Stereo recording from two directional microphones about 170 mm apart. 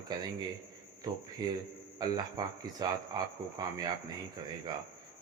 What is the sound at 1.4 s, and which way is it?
Speech, 25° right (ahead or behind).